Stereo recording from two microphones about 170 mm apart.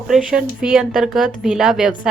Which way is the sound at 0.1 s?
5° right (ahead or behind).